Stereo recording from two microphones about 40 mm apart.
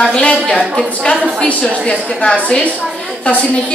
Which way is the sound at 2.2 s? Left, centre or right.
Left.